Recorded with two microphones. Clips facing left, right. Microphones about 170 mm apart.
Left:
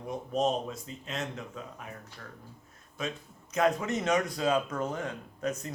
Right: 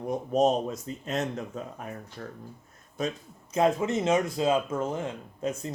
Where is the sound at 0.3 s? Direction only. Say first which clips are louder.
Right 5 dB; 40° right (ahead or behind).